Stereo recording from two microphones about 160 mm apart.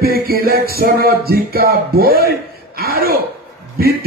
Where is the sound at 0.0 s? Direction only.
70° right (ahead or behind).